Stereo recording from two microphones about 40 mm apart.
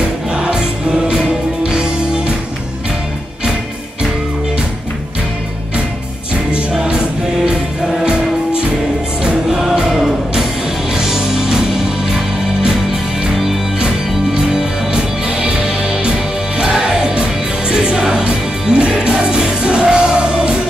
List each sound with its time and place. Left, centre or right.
0.4 s music: right
6.7 s music: centre
9.5 s music: centre
13.7 s music: right
17.1 s music: right
17.7 s music: centre